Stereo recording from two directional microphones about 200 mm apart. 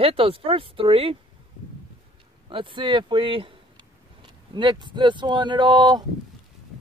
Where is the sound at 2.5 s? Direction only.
25° right (ahead or behind).